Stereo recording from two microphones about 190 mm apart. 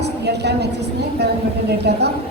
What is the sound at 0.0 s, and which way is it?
Speech, 60° right (ahead or behind).